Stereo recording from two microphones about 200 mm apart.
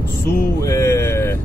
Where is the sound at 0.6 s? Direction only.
15° left (ahead or behind).